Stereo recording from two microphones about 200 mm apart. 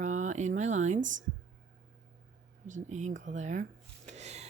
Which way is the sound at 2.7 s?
35° right (ahead or behind).